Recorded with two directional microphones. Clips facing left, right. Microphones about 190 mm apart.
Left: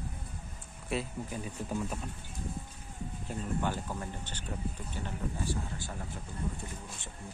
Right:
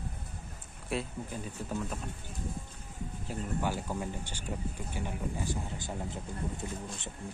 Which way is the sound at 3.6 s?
10° right (ahead or behind).